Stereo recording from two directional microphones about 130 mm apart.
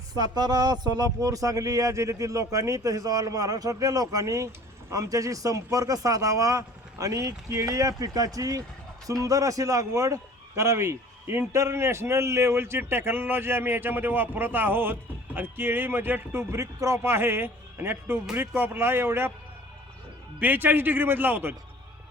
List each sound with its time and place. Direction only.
0.1 s a man's voice: 30° right (ahead or behind)
20.4 s speech: 15° right (ahead or behind)